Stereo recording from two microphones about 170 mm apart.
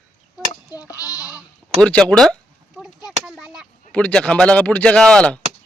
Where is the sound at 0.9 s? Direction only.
20° left (ahead or behind).